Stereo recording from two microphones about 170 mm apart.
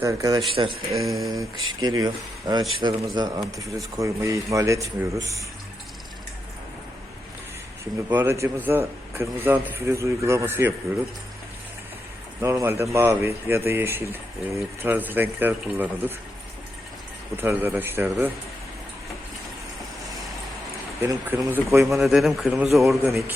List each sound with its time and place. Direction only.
0.0 s speech: 20° right (ahead or behind)
0.9 s a man's voice: centre (ahead or behind)
1.3 s speech: 25° right (ahead or behind)
8.1 s speech: 15° right (ahead or behind)
12.4 s speech: 15° right (ahead or behind)
17.3 s speech: 10° right (ahead or behind)
21.0 s speech: 15° right (ahead or behind)
22.0 s a man's voice: centre (ahead or behind)
23.0 s speech: 15° right (ahead or behind)